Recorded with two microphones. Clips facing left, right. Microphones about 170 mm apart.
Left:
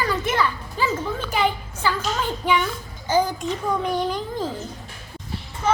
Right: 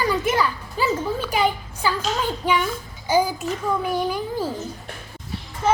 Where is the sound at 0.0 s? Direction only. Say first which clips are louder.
Right 2 dB; 10° right (ahead or behind).